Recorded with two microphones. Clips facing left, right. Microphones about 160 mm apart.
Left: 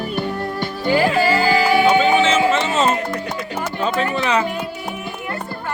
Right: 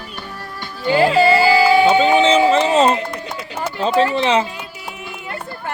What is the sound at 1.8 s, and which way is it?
Music, 30° right (ahead or behind).